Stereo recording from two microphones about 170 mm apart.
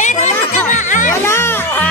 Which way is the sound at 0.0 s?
45° left (ahead or behind).